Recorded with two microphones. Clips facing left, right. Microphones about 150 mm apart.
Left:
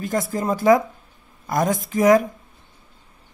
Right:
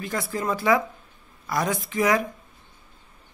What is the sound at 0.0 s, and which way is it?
Speech, 45° left (ahead or behind).